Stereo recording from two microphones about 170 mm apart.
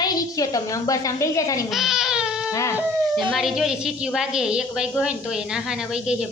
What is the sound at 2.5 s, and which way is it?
Dog, 20° left (ahead or behind).